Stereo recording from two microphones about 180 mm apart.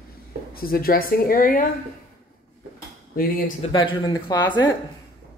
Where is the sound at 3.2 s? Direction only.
50° left (ahead or behind).